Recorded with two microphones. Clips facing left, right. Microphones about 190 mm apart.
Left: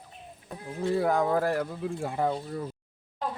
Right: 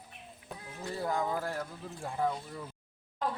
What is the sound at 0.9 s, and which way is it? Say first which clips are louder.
Speech: left 7 dB; 70° left (ahead or behind).